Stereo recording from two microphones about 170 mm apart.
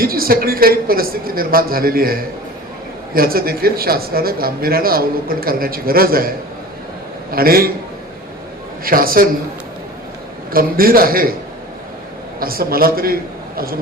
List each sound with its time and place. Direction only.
0.0 s a man's voice: 60° right (ahead or behind)
8.8 s speech: 60° right (ahead or behind)
10.5 s speech: 60° right (ahead or behind)
12.4 s speech: 60° right (ahead or behind)